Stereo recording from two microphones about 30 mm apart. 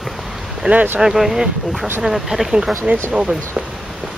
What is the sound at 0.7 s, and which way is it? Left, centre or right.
Speech, right.